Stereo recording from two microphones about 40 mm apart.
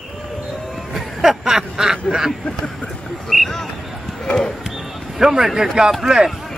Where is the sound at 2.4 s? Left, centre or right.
Left.